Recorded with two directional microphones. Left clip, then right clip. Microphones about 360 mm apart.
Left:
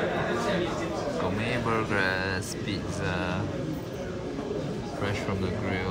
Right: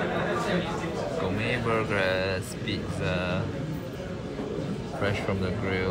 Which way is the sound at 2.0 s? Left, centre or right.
Right.